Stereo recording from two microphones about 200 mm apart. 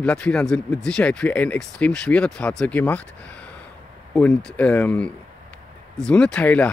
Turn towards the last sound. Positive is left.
turn(degrees=5)  # may be behind; listen again after turning